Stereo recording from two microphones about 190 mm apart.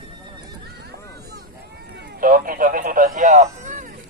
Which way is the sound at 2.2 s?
50° right (ahead or behind).